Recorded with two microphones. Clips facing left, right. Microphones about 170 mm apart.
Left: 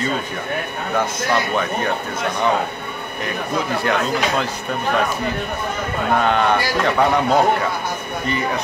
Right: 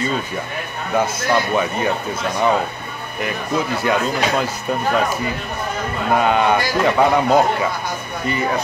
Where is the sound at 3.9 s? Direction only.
5° right (ahead or behind).